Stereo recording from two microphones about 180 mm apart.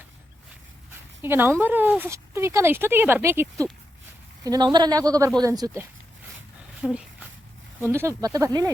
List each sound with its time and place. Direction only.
1.2 s speech: 10° right (ahead or behind)
6.8 s speech: 5° right (ahead or behind)